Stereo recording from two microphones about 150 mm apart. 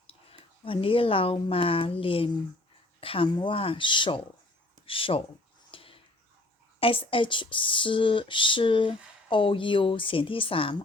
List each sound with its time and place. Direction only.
0.6 s speech: 35° left (ahead or behind)
5.7 s a sound: 35° left (ahead or behind)
6.7 s speech: 40° left (ahead or behind)